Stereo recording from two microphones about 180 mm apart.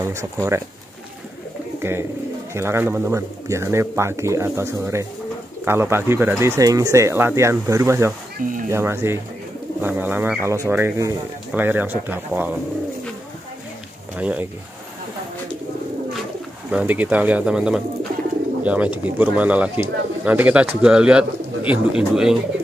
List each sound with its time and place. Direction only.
0.1 s speech: 15° right (ahead or behind)
1.8 s speech: 15° right (ahead or behind)
14.1 s speech: 10° right (ahead or behind)
16.7 s speech: 10° right (ahead or behind)